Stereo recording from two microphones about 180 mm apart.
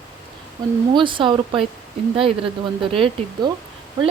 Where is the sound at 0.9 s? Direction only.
25° right (ahead or behind).